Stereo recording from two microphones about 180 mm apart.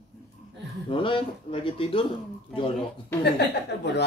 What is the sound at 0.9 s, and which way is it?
Speech, 30° left (ahead or behind).